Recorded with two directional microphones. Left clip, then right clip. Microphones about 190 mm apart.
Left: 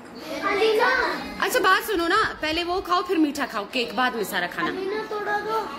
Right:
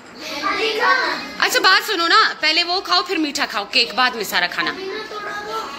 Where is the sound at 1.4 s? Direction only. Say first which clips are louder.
Right 5 dB; 15° left (ahead or behind).